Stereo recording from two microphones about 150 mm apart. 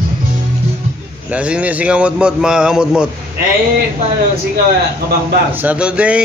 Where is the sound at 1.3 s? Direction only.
10° right (ahead or behind).